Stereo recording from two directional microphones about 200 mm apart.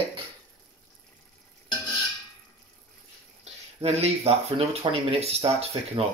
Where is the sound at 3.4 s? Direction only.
30° right (ahead or behind).